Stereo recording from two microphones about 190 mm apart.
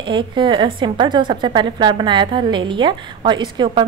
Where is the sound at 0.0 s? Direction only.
25° right (ahead or behind).